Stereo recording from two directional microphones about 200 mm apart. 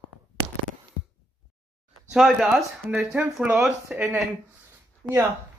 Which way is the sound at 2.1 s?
Centre (ahead or behind).